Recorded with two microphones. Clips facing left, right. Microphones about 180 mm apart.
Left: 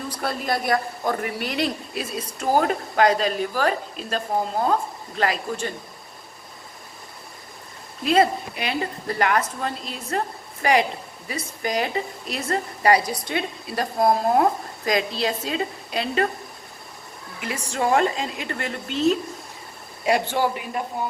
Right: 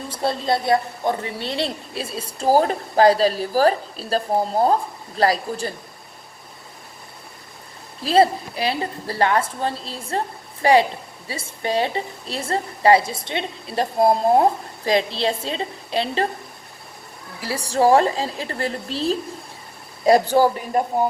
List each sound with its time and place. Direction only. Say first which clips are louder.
0.1 s a woman's voice: right 5 dB; 25° right (ahead or behind)
8.0 s a woman's voice: right 2 dB; 30° right (ahead or behind)
17.4 s a woman's voice: right 7 dB; 35° right (ahead or behind)